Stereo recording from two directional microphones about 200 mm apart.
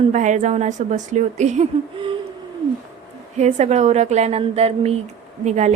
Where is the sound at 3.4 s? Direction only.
35° right (ahead or behind).